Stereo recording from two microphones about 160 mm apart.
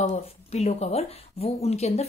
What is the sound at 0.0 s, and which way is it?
Speech, 40° left (ahead or behind).